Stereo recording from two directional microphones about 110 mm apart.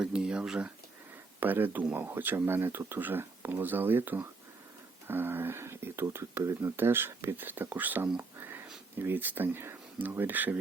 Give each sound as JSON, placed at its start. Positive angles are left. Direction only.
{"t": 0.0, "sound": "speech", "side_deg": -5}
{"t": 1.4, "sound": "speech", "side_deg": -15}
{"t": 8.4, "sound": "a sound", "side_deg": -20}
{"t": 9.0, "sound": "speech", "side_deg": -20}